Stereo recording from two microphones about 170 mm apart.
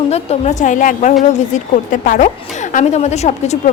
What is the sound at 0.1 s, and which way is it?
A woman's voice, 40° left (ahead or behind).